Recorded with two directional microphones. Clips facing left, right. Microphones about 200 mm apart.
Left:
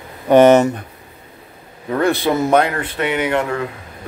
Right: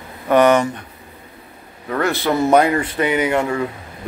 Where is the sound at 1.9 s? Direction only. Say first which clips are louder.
Left 3 dB; 15° left (ahead or behind).